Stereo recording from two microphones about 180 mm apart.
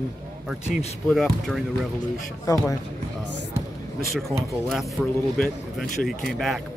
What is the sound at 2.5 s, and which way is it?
Speech, 20° left (ahead or behind).